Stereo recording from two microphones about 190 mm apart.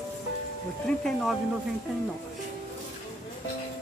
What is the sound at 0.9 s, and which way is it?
Speech, centre (ahead or behind).